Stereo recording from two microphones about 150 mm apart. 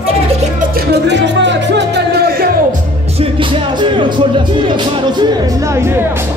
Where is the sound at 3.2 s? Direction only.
35° right (ahead or behind).